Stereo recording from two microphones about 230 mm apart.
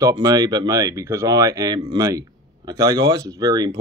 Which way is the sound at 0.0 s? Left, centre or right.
Centre.